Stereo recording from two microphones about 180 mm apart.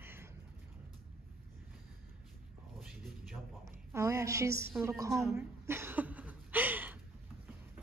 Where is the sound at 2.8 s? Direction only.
Centre (ahead or behind).